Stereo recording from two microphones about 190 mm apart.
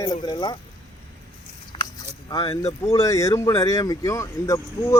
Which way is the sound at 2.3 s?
20° left (ahead or behind).